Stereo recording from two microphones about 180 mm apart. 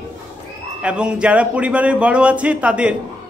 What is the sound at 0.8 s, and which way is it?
A man's voice, 5° right (ahead or behind).